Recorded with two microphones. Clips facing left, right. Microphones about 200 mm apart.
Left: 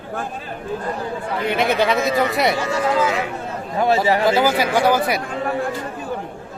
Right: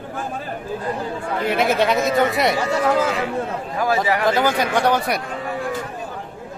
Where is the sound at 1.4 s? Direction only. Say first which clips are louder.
Even; centre (ahead or behind).